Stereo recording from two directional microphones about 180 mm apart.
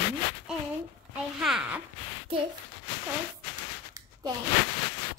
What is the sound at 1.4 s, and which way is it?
Speech, 5° right (ahead or behind).